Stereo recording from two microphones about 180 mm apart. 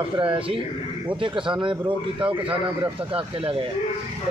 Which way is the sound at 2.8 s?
30° right (ahead or behind).